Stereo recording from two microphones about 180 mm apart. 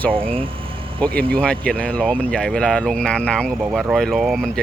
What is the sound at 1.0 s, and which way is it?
Speech, 10° left (ahead or behind).